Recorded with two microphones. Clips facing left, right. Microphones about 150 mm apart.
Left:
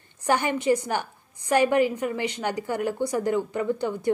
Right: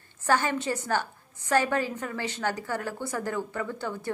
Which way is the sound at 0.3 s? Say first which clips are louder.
Left 4 dB; 15° left (ahead or behind).